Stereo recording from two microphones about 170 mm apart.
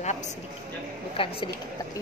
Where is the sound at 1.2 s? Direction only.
30° left (ahead or behind).